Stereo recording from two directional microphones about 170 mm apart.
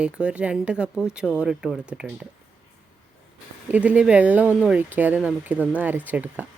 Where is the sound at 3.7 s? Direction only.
5° right (ahead or behind).